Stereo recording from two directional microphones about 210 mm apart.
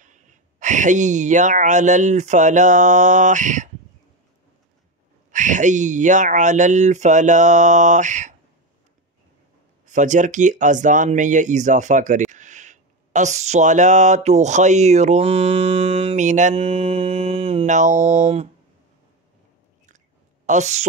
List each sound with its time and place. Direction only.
0.0 s speech: 35° right (ahead or behind)
5.3 s speech: 35° right (ahead or behind)
9.8 s speech: 35° right (ahead or behind)
20.4 s a woman's voice: 35° right (ahead or behind)